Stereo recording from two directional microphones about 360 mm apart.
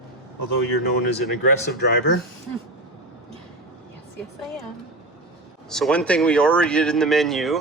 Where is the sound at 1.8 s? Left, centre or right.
Left.